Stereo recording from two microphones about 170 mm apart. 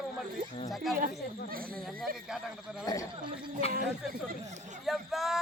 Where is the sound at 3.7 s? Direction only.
60° right (ahead or behind).